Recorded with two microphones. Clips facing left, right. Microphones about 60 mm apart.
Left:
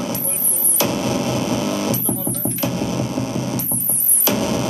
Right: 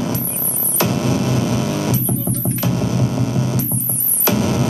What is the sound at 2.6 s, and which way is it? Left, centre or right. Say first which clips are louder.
Mains hum: right 2 dB; left.